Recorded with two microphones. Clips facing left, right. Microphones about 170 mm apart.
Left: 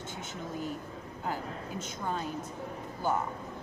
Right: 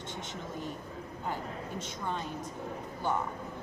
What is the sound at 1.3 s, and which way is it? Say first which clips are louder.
Speech: left 1 dB; 5° left (ahead or behind).